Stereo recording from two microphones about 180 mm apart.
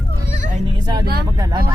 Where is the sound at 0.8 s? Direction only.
25° right (ahead or behind).